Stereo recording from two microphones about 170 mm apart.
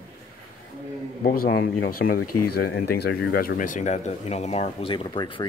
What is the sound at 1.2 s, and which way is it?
Speech, 60° left (ahead or behind).